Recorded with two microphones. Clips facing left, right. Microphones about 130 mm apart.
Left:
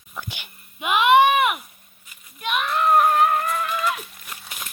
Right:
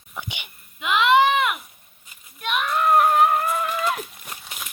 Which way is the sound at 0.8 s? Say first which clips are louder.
Left 2 dB; 15° left (ahead or behind).